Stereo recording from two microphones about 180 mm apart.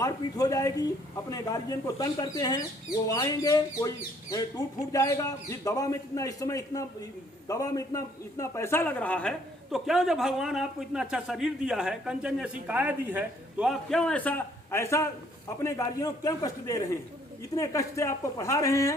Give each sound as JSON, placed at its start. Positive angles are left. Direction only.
{"t": 0.0, "sound": "speech", "side_deg": 20}